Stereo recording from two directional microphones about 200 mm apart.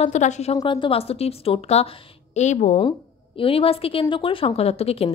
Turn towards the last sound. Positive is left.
turn(degrees=30)  # may be behind; listen again after turning